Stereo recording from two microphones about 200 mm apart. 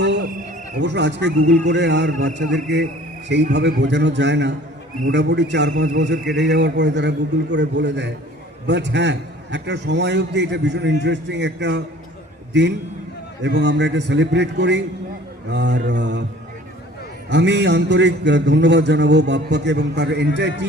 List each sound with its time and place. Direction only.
0.0 s a sound: 60° right (ahead or behind)
0.8 s a man's voice: 60° right (ahead or behind)
17.2 s a man's voice: 60° right (ahead or behind)